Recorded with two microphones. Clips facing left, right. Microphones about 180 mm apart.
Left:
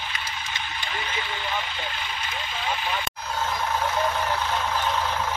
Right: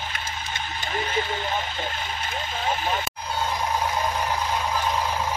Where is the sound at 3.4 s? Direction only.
15° right (ahead or behind).